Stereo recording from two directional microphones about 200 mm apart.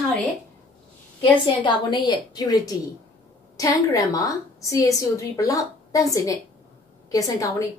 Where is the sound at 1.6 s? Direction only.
20° left (ahead or behind).